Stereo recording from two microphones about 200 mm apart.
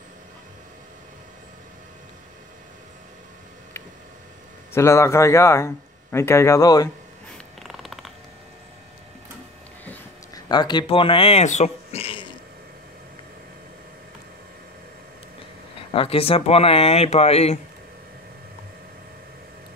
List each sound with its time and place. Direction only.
4.7 s speech: 15° left (ahead or behind)
7.6 s cat: centre (ahead or behind)
9.8 s a sound: 20° left (ahead or behind)
15.9 s speech: 25° left (ahead or behind)